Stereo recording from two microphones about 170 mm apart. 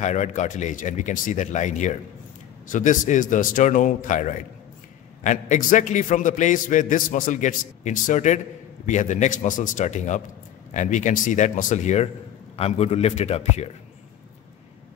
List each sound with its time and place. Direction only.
0.0 s a man's voice: 45° left (ahead or behind)